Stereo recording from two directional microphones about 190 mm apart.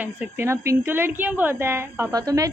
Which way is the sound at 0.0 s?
10° right (ahead or behind).